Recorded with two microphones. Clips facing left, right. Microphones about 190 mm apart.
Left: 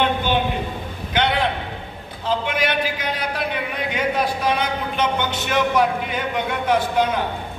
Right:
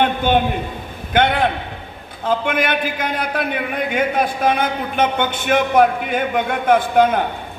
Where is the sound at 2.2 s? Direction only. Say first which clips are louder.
Right 3 dB; 50° right (ahead or behind).